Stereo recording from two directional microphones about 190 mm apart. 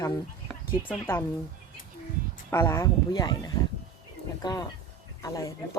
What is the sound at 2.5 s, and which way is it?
Speech, 15° left (ahead or behind).